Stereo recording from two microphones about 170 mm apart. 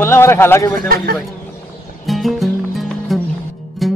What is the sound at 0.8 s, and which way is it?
Speech, 60° right (ahead or behind).